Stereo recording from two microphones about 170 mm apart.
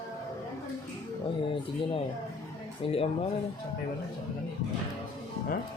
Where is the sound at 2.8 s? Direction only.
35° left (ahead or behind).